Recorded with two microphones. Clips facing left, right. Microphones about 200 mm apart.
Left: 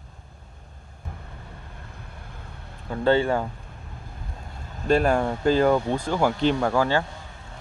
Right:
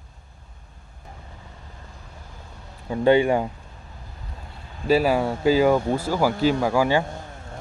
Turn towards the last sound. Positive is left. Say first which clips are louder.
# right 2 dB
turn(degrees=-10)  # may be behind; listen again after turning